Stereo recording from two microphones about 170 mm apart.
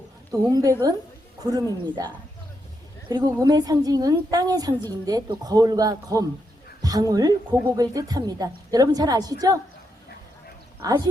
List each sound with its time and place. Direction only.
0.3 s a woman's voice: 20° right (ahead or behind)
10.8 s a woman's voice: 20° right (ahead or behind)